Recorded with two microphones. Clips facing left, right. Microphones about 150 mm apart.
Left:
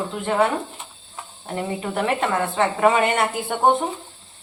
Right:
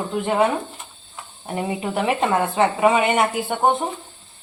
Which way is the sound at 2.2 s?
20° right (ahead or behind).